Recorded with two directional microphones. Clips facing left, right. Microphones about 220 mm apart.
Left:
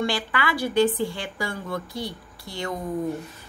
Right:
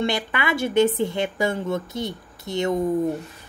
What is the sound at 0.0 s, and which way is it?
A woman's voice, 20° right (ahead or behind).